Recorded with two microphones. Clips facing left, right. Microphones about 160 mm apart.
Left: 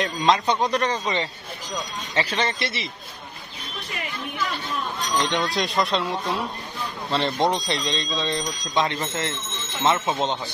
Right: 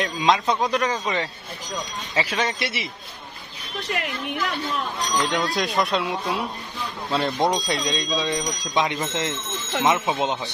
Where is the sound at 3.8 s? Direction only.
75° right (ahead or behind).